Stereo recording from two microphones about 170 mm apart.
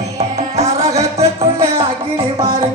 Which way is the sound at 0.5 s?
40° right (ahead or behind).